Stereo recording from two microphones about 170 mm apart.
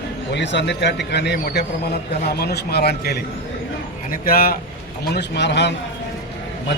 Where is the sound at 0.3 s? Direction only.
90° left.